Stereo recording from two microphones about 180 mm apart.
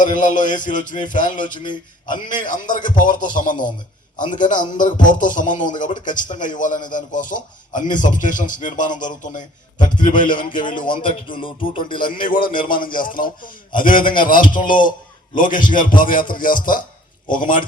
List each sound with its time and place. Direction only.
0.0 s speech: 45° left (ahead or behind)
1.5 s speech: 25° left (ahead or behind)
2.5 s speech: 45° left (ahead or behind)
10.7 s speech: 30° left (ahead or behind)
11.9 s speech: 50° left (ahead or behind)